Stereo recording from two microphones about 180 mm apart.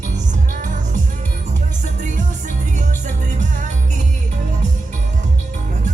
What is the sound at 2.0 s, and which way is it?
Music, 45° right (ahead or behind).